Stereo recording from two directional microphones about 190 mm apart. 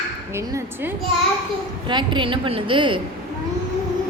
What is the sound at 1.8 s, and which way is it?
A woman's voice, 25° right (ahead or behind).